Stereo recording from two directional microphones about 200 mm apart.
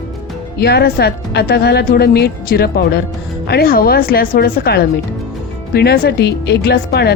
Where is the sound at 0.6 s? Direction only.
55° left (ahead or behind).